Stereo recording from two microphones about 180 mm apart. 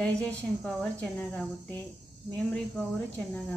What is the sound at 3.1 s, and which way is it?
Speech, 5° left (ahead or behind).